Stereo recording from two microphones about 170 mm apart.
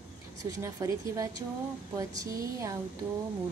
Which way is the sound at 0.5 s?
20° right (ahead or behind).